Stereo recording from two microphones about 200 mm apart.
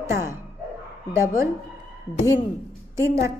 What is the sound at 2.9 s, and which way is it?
Speech, 15° right (ahead or behind).